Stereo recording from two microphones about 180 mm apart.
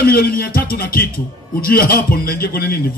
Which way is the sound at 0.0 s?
55° left (ahead or behind).